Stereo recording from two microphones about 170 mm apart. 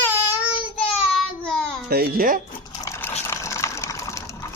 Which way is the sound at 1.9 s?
60° right (ahead or behind).